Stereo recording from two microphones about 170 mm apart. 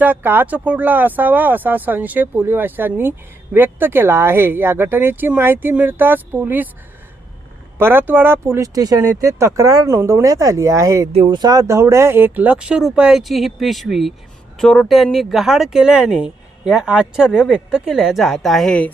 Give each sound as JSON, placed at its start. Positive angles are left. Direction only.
{"t": 0.0, "sound": "speech", "side_deg": -10}
{"t": 7.8, "sound": "speech", "side_deg": -15}
{"t": 11.1, "sound": "speech", "side_deg": -35}
{"t": 11.3, "sound": "speech", "side_deg": -25}